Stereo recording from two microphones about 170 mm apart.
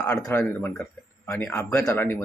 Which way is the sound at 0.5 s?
10° left (ahead or behind).